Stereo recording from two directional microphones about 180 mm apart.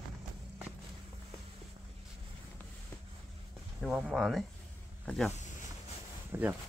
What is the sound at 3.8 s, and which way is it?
Speech, 5° right (ahead or behind).